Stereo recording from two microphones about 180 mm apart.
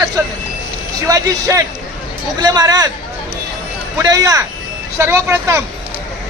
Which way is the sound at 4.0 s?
20° right (ahead or behind).